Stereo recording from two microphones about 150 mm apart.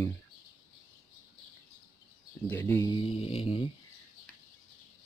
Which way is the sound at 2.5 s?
10° left (ahead or behind).